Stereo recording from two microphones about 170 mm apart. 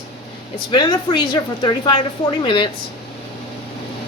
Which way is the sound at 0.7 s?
25° left (ahead or behind).